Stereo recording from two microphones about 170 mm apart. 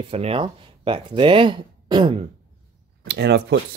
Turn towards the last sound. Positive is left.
turn(degrees=-80)